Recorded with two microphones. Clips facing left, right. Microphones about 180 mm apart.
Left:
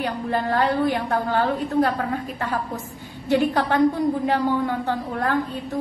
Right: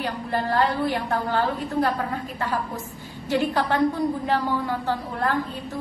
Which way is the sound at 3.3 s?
20° left (ahead or behind).